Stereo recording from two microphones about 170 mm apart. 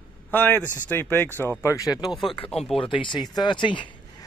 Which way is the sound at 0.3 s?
10° left (ahead or behind).